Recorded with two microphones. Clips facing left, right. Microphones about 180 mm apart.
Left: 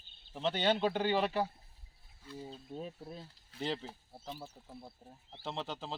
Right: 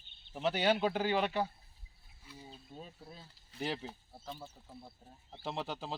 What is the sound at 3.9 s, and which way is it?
Speech, 5° left (ahead or behind).